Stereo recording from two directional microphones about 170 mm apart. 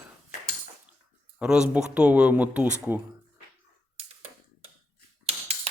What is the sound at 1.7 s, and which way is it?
Speech, 5° right (ahead or behind).